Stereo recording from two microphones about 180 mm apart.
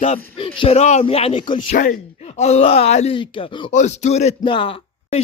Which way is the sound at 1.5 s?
45° left (ahead or behind).